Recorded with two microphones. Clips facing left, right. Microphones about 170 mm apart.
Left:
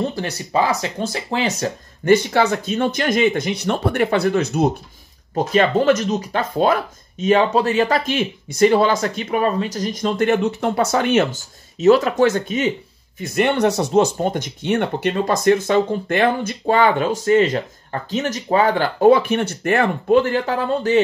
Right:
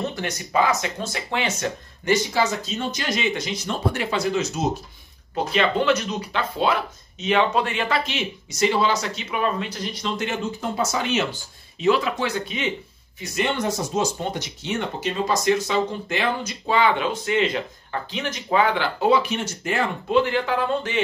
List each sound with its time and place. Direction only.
0.0 s speech: 30° left (ahead or behind)
2.0 s speech: 60° left (ahead or behind)
5.3 s speech: 45° left (ahead or behind)
13.2 s speech: 60° left (ahead or behind); by 21.0 s 40° left (ahead or behind)